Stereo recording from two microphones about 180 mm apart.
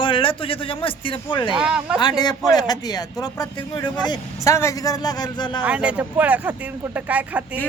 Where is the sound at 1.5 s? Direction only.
5° right (ahead or behind).